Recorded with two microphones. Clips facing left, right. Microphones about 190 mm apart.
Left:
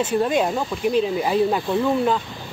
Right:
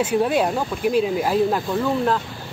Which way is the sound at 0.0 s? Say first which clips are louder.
Right 1 dB; 10° right (ahead or behind).